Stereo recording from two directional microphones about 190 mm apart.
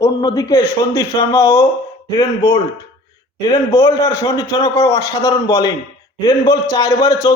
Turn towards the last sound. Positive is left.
turn(degrees=20)  # may be behind; listen again after turning